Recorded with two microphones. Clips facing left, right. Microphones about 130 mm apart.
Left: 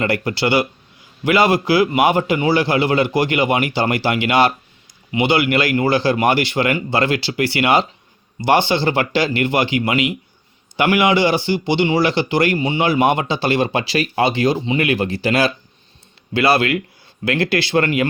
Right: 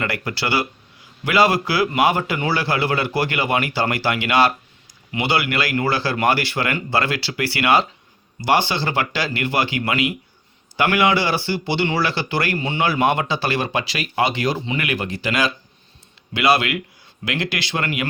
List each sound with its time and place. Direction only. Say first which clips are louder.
0.0 s a man's voice: left 6 dB; 25° left (ahead or behind)